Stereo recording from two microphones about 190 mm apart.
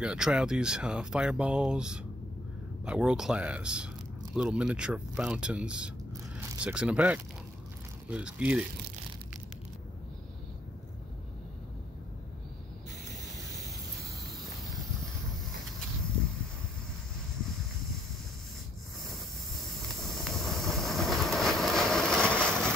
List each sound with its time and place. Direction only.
0.0 s speech: 5° right (ahead or behind)
19.9 s train: centre (ahead or behind)